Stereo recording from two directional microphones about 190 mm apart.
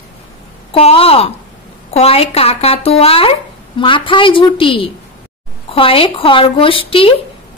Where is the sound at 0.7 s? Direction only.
30° left (ahead or behind).